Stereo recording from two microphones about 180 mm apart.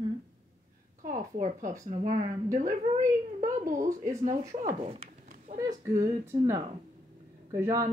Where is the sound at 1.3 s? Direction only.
45° right (ahead or behind).